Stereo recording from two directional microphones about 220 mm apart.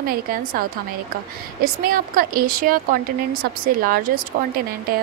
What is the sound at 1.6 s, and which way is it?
A woman's voice, 40° right (ahead or behind).